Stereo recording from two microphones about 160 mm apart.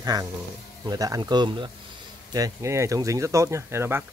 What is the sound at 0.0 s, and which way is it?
Speech, 25° right (ahead or behind).